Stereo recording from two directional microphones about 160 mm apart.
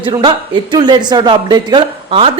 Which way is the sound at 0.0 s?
25° right (ahead or behind).